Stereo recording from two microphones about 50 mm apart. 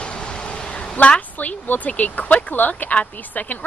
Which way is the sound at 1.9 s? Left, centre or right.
Left.